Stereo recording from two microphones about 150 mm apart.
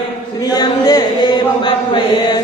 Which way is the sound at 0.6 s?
25° left (ahead or behind).